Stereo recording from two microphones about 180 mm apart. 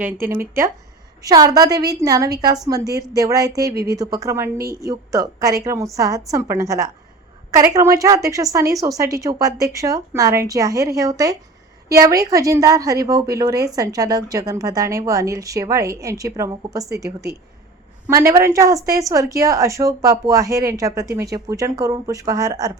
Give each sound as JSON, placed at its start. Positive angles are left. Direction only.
{"t": 0.0, "sound": "a woman's voice", "side_deg": -10}